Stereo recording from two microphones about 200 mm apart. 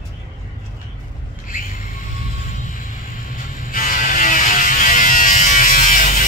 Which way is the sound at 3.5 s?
45° left (ahead or behind).